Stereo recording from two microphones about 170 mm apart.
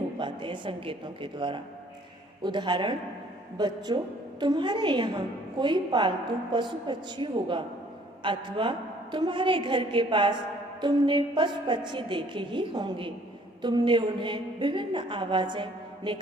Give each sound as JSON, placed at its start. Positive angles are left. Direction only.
{"t": 0.2, "sound": "a woman's voice", "side_deg": -30}